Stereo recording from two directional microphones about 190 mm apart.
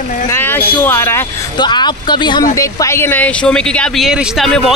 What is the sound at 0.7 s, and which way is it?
Speech, 10° left (ahead or behind).